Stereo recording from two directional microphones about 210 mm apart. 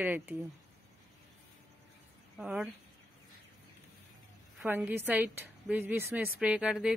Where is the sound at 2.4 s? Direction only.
5° right (ahead or behind).